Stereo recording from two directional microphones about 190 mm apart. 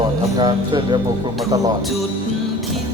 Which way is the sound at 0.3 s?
25° right (ahead or behind).